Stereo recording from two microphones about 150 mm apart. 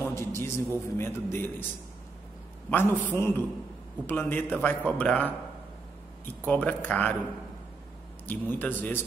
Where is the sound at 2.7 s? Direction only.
15° left (ahead or behind).